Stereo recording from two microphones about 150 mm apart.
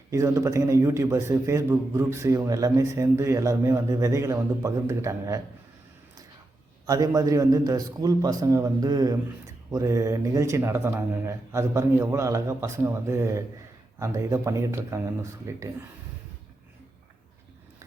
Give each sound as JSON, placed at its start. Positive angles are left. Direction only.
{"t": 0.1, "sound": "a man's voice", "side_deg": -20}
{"t": 6.8, "sound": "a man's voice", "side_deg": -25}